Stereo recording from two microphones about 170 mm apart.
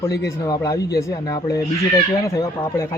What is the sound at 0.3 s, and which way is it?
Speech, 20° left (ahead or behind).